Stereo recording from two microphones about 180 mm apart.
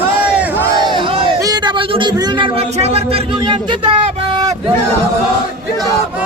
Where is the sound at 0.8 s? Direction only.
25° right (ahead or behind).